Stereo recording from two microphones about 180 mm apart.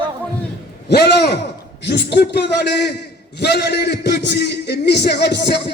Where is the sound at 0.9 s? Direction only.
65° left (ahead or behind).